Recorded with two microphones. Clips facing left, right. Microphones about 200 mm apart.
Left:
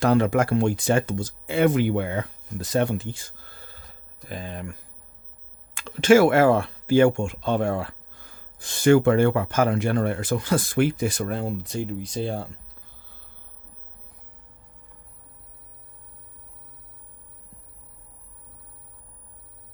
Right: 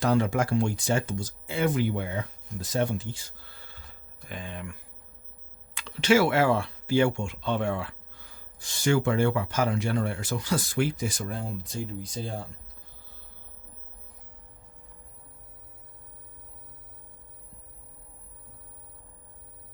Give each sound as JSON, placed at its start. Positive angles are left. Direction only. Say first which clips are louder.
{"t": 0.0, "sound": "speech", "louder": "left 5 dB", "side_deg": 60}